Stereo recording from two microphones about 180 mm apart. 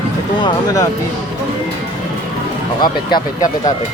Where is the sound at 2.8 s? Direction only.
20° left (ahead or behind).